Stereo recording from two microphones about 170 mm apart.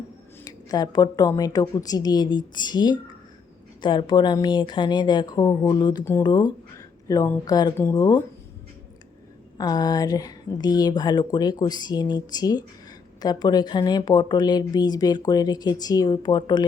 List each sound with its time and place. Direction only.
0.4 s speech: 20° left (ahead or behind)
9.6 s speech: 25° left (ahead or behind)